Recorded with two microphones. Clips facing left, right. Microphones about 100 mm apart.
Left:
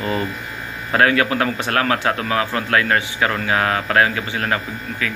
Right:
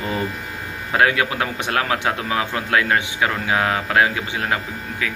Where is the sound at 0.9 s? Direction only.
15° right (ahead or behind).